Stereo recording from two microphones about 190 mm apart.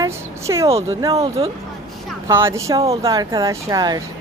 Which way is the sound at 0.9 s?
20° right (ahead or behind).